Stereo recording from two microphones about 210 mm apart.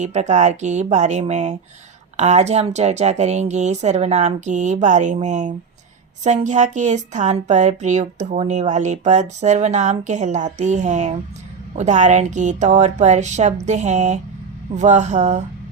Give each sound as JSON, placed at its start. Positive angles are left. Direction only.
{"t": 0.0, "sound": "speech", "side_deg": -35}